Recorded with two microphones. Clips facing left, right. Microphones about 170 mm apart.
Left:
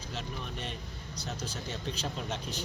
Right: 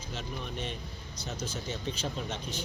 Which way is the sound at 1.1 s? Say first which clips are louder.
Right 1 dB; 35° left (ahead or behind).